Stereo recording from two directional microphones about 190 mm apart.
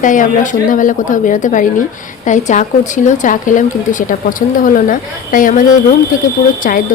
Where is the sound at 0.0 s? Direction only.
45° left (ahead or behind).